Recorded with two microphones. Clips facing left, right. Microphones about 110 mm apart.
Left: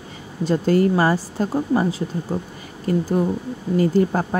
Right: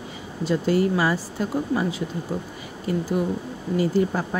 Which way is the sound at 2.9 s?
45° left (ahead or behind).